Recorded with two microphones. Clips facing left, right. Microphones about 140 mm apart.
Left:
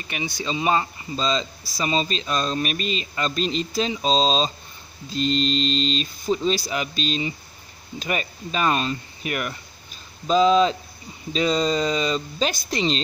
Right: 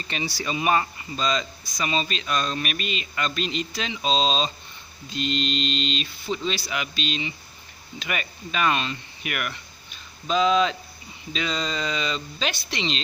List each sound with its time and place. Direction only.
0.0 s speech: 15° left (ahead or behind)
0.4 s speech: 25° left (ahead or behind); by 13.0 s 40° left (ahead or behind)